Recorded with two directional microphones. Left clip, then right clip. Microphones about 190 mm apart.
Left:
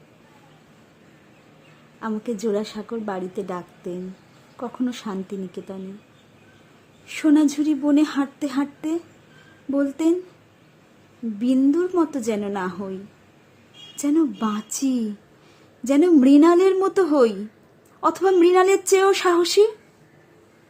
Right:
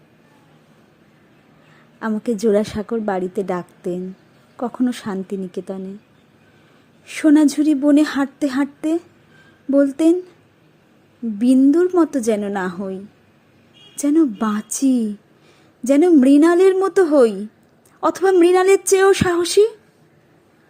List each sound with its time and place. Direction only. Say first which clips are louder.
2.0 s speech: right 6 dB; 25° right (ahead or behind)
7.0 s speech: right 4 dB; 25° right (ahead or behind)
11.3 s speech: right 6 dB; 25° right (ahead or behind)
13.9 s speech: right 4 dB; 20° right (ahead or behind)